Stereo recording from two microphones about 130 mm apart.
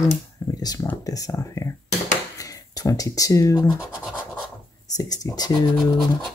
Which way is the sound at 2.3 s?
25° left (ahead or behind).